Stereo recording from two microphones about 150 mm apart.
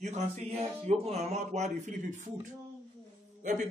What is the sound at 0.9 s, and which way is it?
A man's voice, 45° right (ahead or behind).